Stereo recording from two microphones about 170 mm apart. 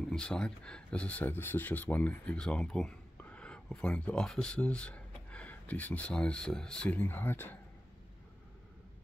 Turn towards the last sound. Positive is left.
turn(degrees=10)  # may be behind; listen again after turning